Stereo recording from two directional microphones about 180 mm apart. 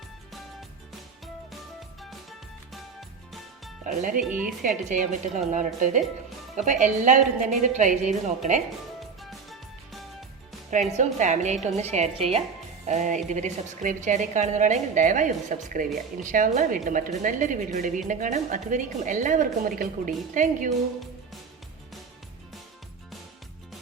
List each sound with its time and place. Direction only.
3.8 s a woman's voice: 45° right (ahead or behind)
4.2 s speech: 5° right (ahead or behind)
4.9 s a woman's voice: 45° right (ahead or behind)
9.0 s music: centre (ahead or behind)
10.7 s a woman's voice: 40° right (ahead or behind)